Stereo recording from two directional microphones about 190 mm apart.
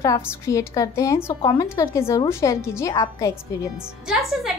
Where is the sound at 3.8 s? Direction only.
5° right (ahead or behind).